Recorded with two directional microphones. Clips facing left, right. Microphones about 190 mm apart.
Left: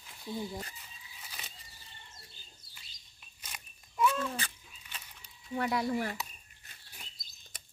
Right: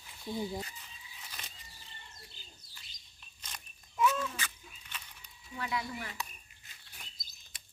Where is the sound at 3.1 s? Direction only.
10° left (ahead or behind).